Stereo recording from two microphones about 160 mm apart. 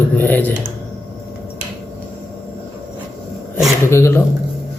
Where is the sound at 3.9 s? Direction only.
15° left (ahead or behind).